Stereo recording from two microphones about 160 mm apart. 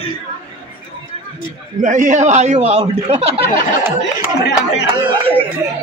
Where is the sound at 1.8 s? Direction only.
50° right (ahead or behind).